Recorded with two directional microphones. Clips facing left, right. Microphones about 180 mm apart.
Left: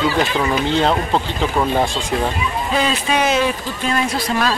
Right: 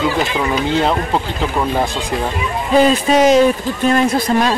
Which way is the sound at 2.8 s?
40° right (ahead or behind).